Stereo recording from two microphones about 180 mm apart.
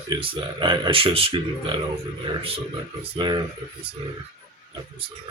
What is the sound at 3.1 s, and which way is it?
Speech, 25° right (ahead or behind).